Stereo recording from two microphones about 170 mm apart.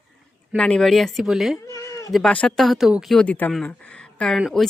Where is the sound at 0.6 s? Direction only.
5° left (ahead or behind).